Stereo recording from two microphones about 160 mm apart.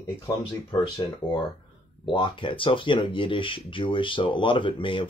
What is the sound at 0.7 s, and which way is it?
Speech, 30° left (ahead or behind).